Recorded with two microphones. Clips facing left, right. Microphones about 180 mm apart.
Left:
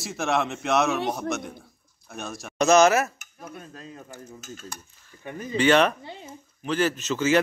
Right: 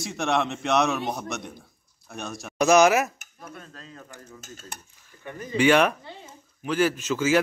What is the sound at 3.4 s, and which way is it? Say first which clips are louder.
Dishes: left 3 dB; 10° left (ahead or behind).